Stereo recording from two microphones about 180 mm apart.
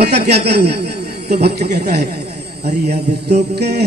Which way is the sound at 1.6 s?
40° right (ahead or behind).